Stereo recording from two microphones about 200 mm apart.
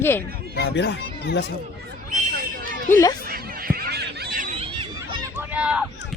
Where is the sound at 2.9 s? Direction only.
15° left (ahead or behind).